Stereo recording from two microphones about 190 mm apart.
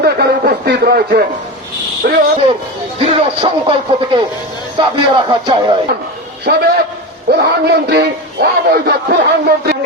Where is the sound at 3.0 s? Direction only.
30° right (ahead or behind).